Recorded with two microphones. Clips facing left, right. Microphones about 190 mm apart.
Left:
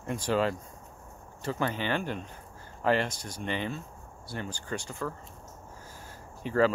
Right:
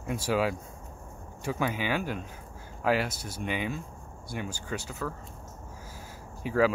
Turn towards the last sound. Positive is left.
turn(degrees=-10)  # may be behind; listen again after turning